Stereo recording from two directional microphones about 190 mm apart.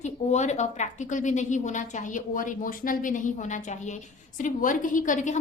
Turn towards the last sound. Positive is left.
turn(degrees=40)  # may be behind; listen again after turning